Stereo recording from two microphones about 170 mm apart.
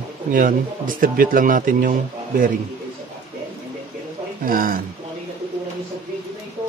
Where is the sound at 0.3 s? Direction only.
50° right (ahead or behind).